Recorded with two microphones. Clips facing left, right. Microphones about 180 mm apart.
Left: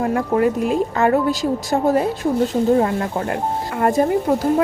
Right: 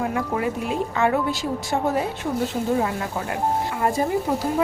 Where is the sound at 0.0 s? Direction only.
45° left (ahead or behind).